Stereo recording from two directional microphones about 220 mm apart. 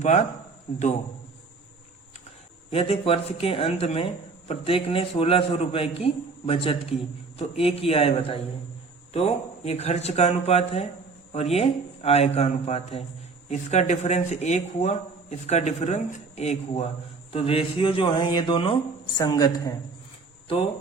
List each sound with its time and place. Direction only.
0.0 s speech: 30° left (ahead or behind)
2.6 s speech: 25° left (ahead or behind)